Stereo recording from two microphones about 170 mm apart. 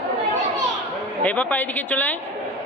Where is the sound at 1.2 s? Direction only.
10° left (ahead or behind).